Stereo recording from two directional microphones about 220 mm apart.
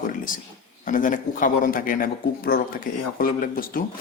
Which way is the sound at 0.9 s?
35° left (ahead or behind).